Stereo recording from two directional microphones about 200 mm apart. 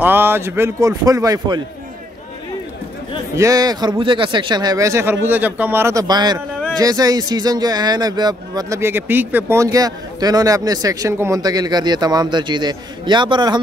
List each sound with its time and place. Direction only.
0.0 s speech: 10° right (ahead or behind)
3.3 s speech: 15° right (ahead or behind)